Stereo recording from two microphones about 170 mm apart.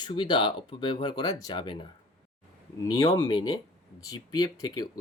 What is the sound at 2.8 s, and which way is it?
Speech, 15° left (ahead or behind).